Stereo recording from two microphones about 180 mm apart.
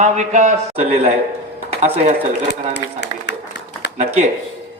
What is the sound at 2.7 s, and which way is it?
Speech, 75° left (ahead or behind).